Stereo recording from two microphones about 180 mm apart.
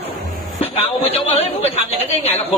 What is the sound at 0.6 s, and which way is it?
A man's voice, 35° left (ahead or behind).